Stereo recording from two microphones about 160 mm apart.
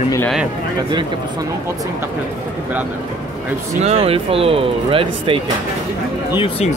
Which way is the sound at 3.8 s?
40° right (ahead or behind).